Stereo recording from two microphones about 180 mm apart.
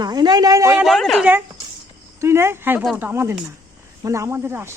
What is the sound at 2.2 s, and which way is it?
A man's voice, 15° right (ahead or behind).